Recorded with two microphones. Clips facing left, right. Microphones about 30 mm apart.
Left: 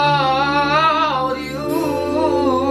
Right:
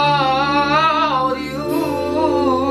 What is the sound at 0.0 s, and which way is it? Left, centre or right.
Singing, centre.